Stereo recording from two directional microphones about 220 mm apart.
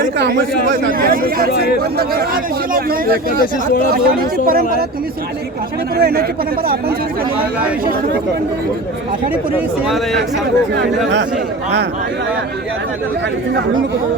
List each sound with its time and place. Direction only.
0.0 s speech: 50° right (ahead or behind)
3.9 s speech: 40° right (ahead or behind)
6.0 s a man's voice: 45° right (ahead or behind)